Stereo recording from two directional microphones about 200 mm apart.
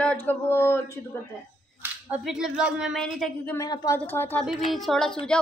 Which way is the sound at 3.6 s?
15° left (ahead or behind).